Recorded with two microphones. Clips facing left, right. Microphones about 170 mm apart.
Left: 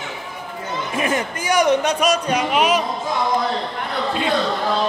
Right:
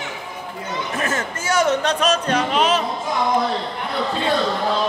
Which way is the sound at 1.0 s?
15° left (ahead or behind).